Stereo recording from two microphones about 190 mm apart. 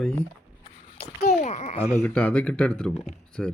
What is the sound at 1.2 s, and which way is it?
Speech, 40° left (ahead or behind).